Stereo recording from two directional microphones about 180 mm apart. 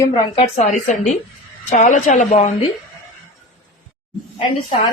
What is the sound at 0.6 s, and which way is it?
Speech, 45° left (ahead or behind).